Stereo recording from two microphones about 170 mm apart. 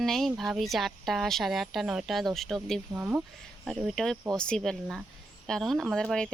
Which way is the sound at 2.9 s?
10° right (ahead or behind).